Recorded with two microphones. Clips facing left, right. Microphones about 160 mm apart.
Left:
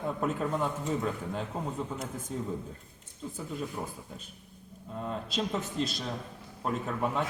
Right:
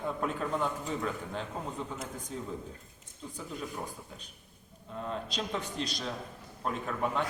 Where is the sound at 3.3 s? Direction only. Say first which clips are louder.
Left 2 dB; 5° left (ahead or behind).